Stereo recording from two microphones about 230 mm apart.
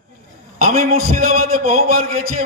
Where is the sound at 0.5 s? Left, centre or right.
Right.